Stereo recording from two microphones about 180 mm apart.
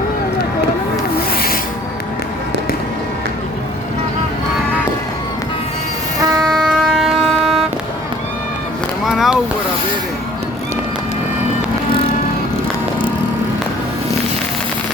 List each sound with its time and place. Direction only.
1.3 s rub: 55° left (ahead or behind)
6.1 s a sound: 20° right (ahead or behind)
6.4 s train: centre (ahead or behind)
9.0 s boat: centre (ahead or behind)